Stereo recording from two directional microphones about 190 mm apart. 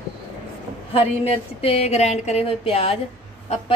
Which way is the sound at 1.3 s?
30° left (ahead or behind).